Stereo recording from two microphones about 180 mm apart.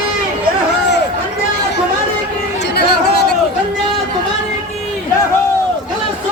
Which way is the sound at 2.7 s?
65° left (ahead or behind).